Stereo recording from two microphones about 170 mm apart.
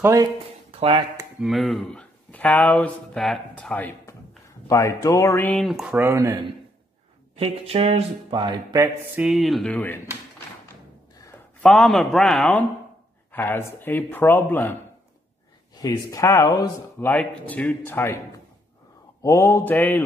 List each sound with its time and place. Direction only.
0.0 s speech: 20° right (ahead or behind)
0.7 s a sound: 35° right (ahead or behind)
1.4 s speech: centre (ahead or behind); by 6.4 s 20° right (ahead or behind)
7.3 s speech: 35° right (ahead or behind)
8.8 s speech: 10° right (ahead or behind); by 10.0 s 10° left (ahead or behind)
11.6 s speech: 5° left (ahead or behind)
15.7 s speech: 20° left (ahead or behind)
17.0 s speech: 10° left (ahead or behind)
19.2 s speech: 15° left (ahead or behind)